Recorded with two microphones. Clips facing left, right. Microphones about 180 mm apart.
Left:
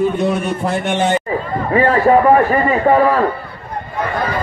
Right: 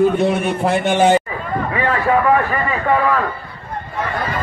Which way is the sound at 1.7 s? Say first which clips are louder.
Left 6 dB; 40° left (ahead or behind).